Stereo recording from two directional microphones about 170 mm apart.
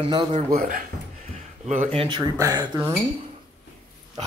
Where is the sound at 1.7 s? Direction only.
40° right (ahead or behind).